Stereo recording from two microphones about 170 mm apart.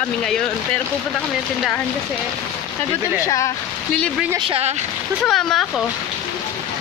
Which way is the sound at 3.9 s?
5° left (ahead or behind).